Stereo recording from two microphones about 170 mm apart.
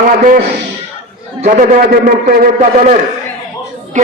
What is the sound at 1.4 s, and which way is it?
A man's voice, 50° right (ahead or behind).